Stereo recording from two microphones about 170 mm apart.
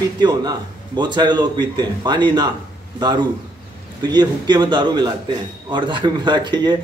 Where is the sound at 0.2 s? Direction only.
25° right (ahead or behind).